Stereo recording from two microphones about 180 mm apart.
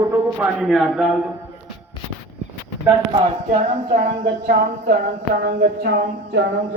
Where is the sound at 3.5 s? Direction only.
40° right (ahead or behind).